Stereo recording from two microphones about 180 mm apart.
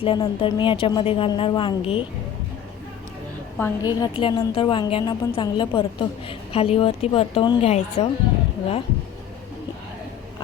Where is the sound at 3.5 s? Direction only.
15° left (ahead or behind); by 8.1 s 35° left (ahead or behind).